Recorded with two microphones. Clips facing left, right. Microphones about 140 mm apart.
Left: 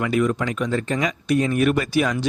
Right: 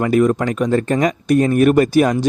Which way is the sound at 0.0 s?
45° right (ahead or behind).